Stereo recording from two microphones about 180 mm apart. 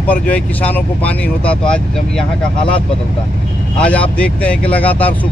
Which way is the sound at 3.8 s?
5° left (ahead or behind).